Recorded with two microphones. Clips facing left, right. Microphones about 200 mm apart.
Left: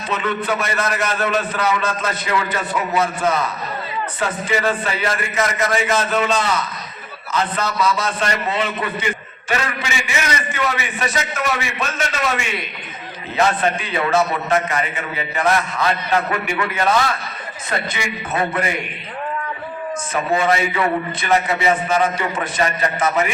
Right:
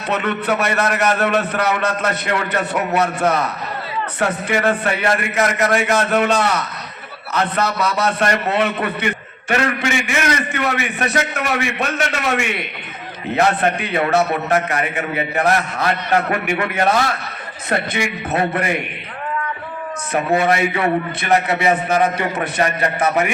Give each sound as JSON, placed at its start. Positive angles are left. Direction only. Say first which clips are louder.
{"t": 0.1, "sound": "a man's voice", "louder": "right 2 dB", "side_deg": -60}
{"t": 20.1, "sound": "a man's voice", "louder": "right 2 dB", "side_deg": -60}